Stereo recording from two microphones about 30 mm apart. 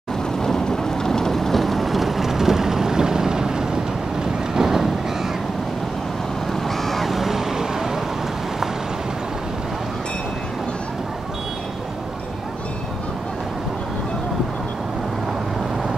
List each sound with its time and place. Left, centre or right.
0.4 s vehicle: centre
6.8 s vehicle: centre
7.1 s vehicle: centre